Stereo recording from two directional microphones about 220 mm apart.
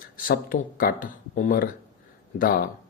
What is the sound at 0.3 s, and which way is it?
A man's voice, 40° left (ahead or behind).